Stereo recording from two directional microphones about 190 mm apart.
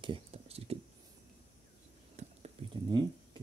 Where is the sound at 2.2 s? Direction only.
35° right (ahead or behind).